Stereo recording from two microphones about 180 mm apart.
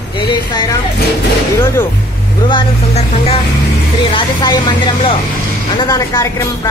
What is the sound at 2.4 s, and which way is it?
Speech, 30° left (ahead or behind).